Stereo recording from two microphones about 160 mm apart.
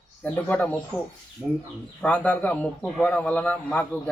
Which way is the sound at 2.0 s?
10° left (ahead or behind).